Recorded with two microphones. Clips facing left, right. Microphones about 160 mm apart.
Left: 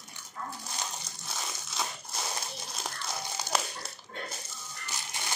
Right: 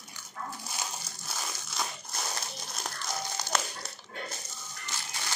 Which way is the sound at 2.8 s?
5° left (ahead or behind).